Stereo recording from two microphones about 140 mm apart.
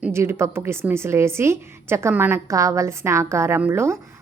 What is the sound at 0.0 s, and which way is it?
A woman's voice, 15° right (ahead or behind).